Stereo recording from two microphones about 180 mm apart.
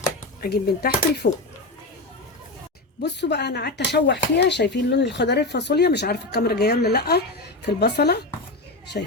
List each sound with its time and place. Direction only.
0.4 s speech: 60° left (ahead or behind)
3.0 s speech: 70° left (ahead or behind)